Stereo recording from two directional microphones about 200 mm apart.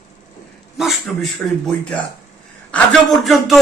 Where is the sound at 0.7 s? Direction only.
Centre (ahead or behind).